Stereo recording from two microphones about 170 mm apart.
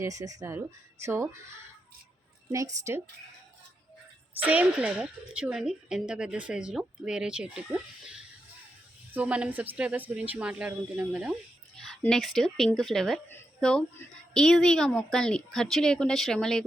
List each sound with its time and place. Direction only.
0.0 s a woman's voice: 20° right (ahead or behind)
4.4 s a woman's voice: 10° right (ahead or behind)